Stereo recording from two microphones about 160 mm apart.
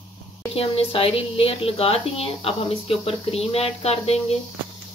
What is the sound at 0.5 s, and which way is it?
Speech, 40° left (ahead or behind).